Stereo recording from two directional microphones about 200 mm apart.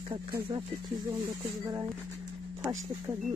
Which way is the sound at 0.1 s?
25° right (ahead or behind).